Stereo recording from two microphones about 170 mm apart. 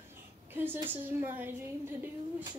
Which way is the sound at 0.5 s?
10° right (ahead or behind).